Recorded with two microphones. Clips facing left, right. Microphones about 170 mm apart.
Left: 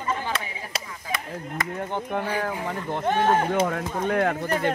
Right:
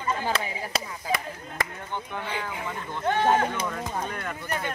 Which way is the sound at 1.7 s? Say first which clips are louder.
Left 7 dB; 50° left (ahead or behind).